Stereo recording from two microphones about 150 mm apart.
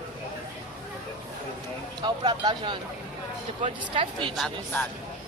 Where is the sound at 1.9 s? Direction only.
30° right (ahead or behind).